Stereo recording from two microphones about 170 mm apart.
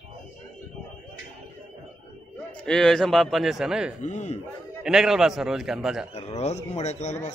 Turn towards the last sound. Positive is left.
turn(degrees=45)  # may be behind; listen again after turning